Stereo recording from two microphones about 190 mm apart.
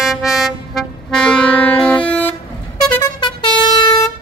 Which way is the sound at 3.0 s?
20° left (ahead or behind).